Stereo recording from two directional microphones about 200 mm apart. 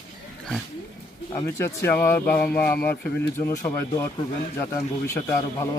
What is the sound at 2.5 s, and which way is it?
Speech, 10° left (ahead or behind).